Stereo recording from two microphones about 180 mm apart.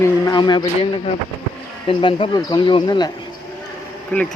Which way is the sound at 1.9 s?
30° left (ahead or behind).